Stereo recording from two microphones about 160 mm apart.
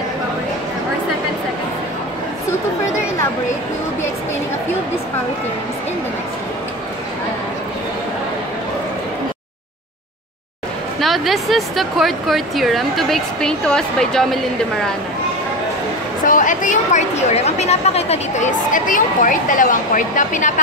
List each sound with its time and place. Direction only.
11.0 s speech: centre (ahead or behind)
16.3 s a woman's voice: 55° left (ahead or behind)